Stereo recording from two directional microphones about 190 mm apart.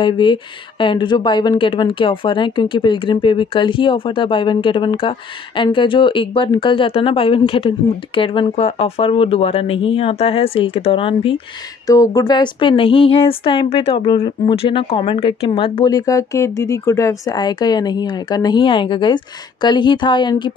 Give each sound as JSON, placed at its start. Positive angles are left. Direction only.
{"t": 0.0, "sound": "speech", "side_deg": 25}